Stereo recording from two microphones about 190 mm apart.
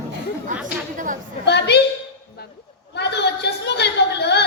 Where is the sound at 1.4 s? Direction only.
65° left (ahead or behind).